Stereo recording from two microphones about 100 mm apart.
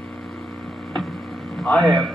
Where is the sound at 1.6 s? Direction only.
5° left (ahead or behind).